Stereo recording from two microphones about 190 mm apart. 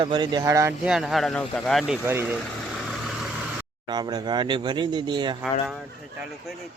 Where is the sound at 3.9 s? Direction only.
20° right (ahead or behind).